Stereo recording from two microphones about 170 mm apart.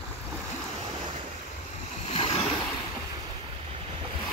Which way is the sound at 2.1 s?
35° left (ahead or behind).